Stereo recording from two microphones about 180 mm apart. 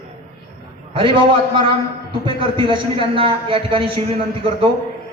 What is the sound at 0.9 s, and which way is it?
A man's voice, 30° right (ahead or behind).